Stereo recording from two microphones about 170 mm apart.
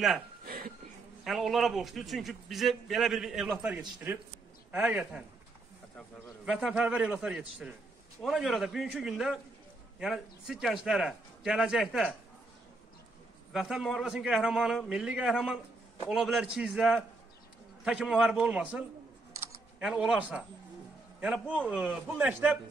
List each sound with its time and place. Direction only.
0.5 s a sound: 65° right (ahead or behind)
1.2 s a man's voice: centre (ahead or behind)
13.5 s a man's voice: centre (ahead or behind)